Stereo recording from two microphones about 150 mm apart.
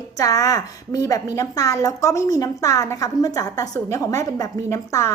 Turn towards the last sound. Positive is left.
turn(degrees=20)  # may be behind; listen again after turning